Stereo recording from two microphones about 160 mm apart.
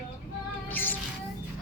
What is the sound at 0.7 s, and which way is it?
Music, 10° left (ahead or behind).